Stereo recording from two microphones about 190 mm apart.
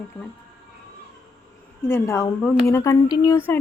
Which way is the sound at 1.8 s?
15° left (ahead or behind).